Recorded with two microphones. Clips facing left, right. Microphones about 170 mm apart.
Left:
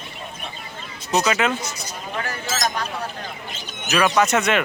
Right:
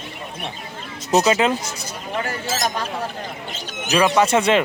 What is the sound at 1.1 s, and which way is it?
Speech, 35° right (ahead or behind).